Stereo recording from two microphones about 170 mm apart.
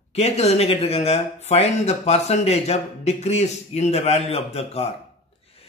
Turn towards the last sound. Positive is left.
turn(degrees=35)  # may be behind; listen again after turning